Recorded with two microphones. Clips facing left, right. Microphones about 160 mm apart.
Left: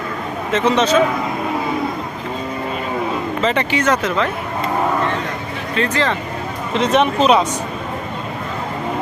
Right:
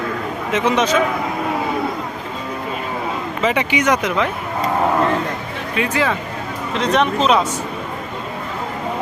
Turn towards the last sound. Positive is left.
turn(degrees=5)  # may be behind; listen again after turning